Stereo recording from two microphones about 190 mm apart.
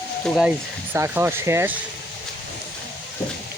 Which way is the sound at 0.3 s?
Centre (ahead or behind).